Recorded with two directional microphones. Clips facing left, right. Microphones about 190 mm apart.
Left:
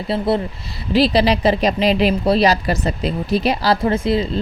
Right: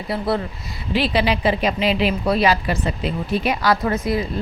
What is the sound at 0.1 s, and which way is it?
Speech, 25° left (ahead or behind).